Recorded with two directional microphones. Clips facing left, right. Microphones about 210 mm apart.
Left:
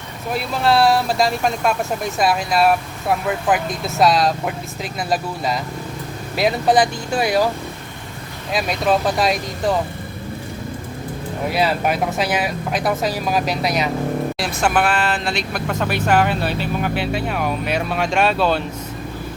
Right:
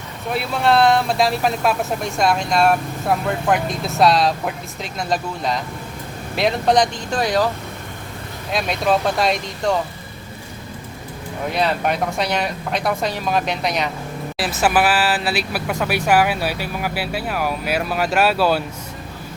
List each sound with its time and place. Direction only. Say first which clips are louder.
0.3 s speech: even; centre (ahead or behind)
8.5 s speech: left 1 dB; centre (ahead or behind)
11.5 s speech: left 1 dB; 5° left (ahead or behind)